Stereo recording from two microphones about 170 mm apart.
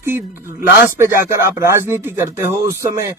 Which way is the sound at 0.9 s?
15° right (ahead or behind).